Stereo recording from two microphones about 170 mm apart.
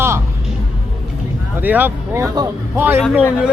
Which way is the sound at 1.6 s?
10° right (ahead or behind).